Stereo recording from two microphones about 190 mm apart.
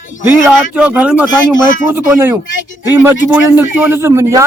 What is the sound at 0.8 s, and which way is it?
Speech, 5° right (ahead or behind).